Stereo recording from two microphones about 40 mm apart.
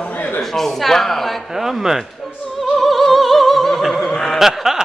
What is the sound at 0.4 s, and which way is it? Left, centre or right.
A man's voice, centre.